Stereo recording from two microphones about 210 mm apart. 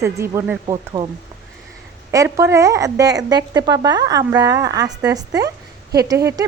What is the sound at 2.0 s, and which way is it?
A woman's voice, 15° right (ahead or behind).